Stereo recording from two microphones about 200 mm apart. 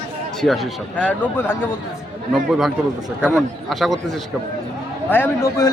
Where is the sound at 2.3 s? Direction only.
Centre (ahead or behind).